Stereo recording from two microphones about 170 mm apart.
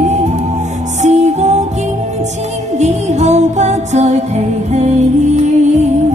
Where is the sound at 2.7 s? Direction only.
40° right (ahead or behind).